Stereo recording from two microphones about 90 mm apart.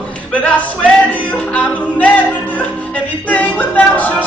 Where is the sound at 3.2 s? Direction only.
15° left (ahead or behind).